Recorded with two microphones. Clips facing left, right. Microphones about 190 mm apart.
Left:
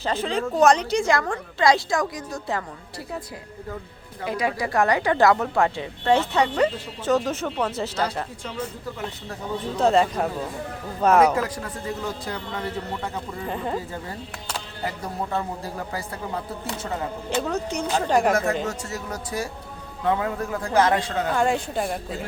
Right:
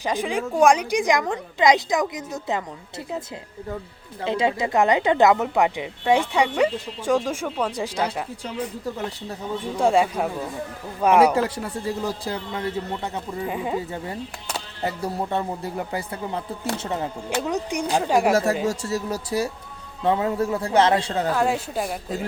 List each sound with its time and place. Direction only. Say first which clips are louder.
0.0 s speech: even; 15° right (ahead or behind)
4.2 s speech: right 3 dB; 25° right (ahead or behind)
9.7 s speech: even; 10° right (ahead or behind)
11.3 s a man's voice: right 3 dB; 30° right (ahead or behind)
13.5 s speech: even; 10° right (ahead or behind)
14.8 s a man's voice: right 4 dB; 25° right (ahead or behind)
17.2 s speech: left 1 dB; 15° right (ahead or behind)
18.7 s a man's voice: right 5 dB; 35° right (ahead or behind)
21.3 s a woman's voice: even; 5° right (ahead or behind)